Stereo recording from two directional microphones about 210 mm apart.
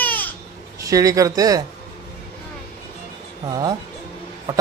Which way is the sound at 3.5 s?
20° right (ahead or behind).